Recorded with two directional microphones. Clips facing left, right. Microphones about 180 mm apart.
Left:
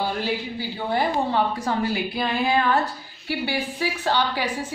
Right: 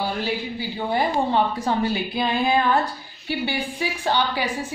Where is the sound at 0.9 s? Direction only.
20° right (ahead or behind).